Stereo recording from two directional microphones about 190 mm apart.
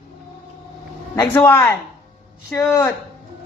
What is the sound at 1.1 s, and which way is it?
Speech, 15° left (ahead or behind).